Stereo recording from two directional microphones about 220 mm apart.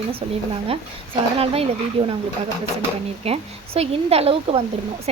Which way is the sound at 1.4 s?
25° right (ahead or behind).